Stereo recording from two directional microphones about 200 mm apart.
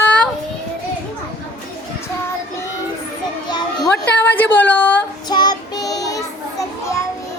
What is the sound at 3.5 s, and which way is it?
Children playing, 20° left (ahead or behind).